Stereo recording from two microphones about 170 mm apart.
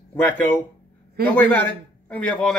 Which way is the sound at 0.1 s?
10° left (ahead or behind).